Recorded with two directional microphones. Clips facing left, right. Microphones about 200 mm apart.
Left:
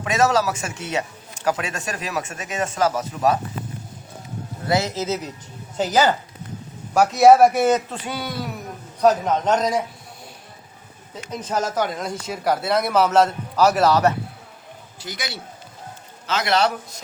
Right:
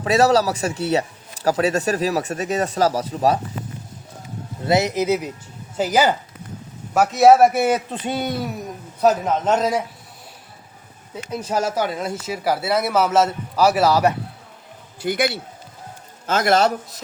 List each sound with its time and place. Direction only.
0.0 s speech: 35° right (ahead or behind)
4.6 s a man's voice: 20° right (ahead or behind)
8.0 s speech: 25° right (ahead or behind)
9.0 s a man's voice: 5° right (ahead or behind)
11.1 s speech: 10° right (ahead or behind)
15.0 s a man's voice: 55° right (ahead or behind)